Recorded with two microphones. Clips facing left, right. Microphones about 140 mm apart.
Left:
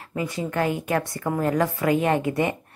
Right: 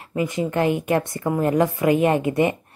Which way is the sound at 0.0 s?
20° right (ahead or behind).